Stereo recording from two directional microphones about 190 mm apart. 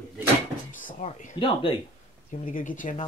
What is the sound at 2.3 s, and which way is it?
Speech, 45° left (ahead or behind).